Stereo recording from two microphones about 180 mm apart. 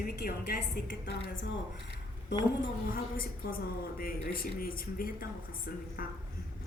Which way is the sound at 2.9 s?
55° left (ahead or behind).